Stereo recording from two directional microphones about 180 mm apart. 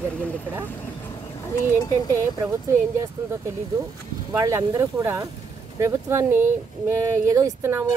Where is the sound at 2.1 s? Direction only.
15° right (ahead or behind).